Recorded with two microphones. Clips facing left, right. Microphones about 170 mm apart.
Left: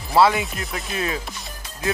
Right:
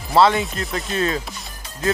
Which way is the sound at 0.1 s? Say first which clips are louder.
Right 1 dB; 10° left (ahead or behind).